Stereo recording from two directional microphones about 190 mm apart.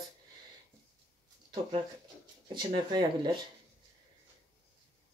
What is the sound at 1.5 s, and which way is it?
Speech, 30° right (ahead or behind).